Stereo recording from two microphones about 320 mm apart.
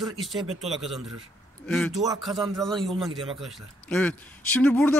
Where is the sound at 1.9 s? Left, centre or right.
Centre.